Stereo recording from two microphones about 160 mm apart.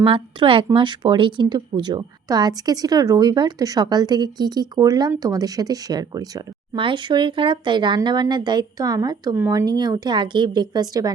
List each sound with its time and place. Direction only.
0.0 s a woman's voice: 30° right (ahead or behind)